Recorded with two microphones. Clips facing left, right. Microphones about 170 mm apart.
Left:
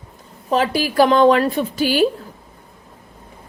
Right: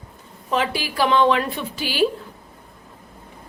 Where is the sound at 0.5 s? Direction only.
40° left (ahead or behind).